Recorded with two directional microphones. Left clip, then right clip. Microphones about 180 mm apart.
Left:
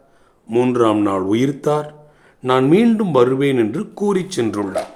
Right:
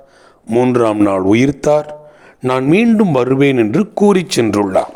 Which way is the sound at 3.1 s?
40° right (ahead or behind).